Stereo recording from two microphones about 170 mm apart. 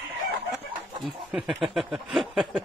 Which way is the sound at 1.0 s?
5° right (ahead or behind).